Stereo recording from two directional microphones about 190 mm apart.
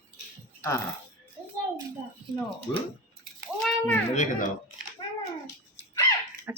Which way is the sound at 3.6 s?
10° left (ahead or behind).